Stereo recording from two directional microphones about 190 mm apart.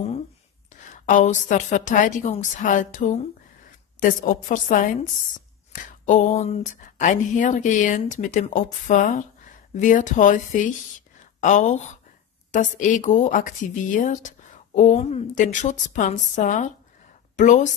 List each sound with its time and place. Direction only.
1.0 s a woman's voice: 40° left (ahead or behind)